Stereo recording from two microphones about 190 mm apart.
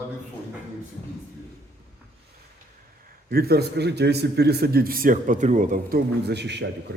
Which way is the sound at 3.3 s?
55° right (ahead or behind).